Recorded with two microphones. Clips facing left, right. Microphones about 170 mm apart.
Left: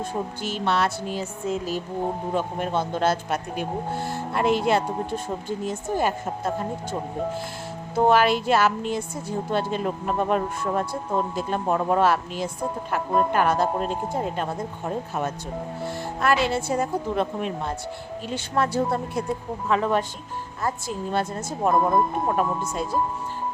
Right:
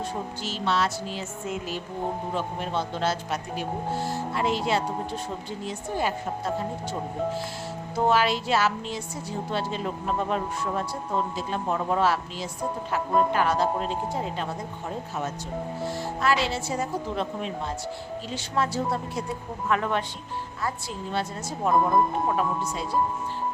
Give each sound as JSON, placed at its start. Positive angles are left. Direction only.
{"t": 0.4, "sound": "speech", "side_deg": 55}
{"t": 1.5, "sound": "music", "side_deg": 40}
{"t": 2.3, "sound": "speech", "side_deg": 50}
{"t": 7.9, "sound": "speech", "side_deg": 55}
{"t": 15.9, "sound": "speech", "side_deg": 55}
{"t": 19.6, "sound": "speech", "side_deg": 30}
{"t": 20.6, "sound": "speech", "side_deg": 45}
{"t": 21.7, "sound": "speech", "side_deg": 0}
{"t": 22.4, "sound": "speech", "side_deg": 50}